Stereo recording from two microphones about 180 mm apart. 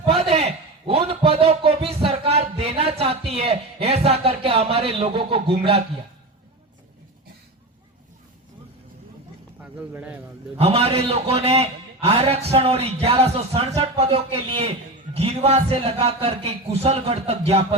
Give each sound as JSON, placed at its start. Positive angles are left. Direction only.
{"t": 0.0, "sound": "a sound", "side_deg": -35}
{"t": 9.6, "sound": "speech", "side_deg": -5}
{"t": 10.6, "sound": "a man's voice", "side_deg": -35}